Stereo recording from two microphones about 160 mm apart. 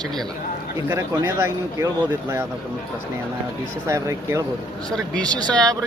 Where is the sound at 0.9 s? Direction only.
15° right (ahead or behind).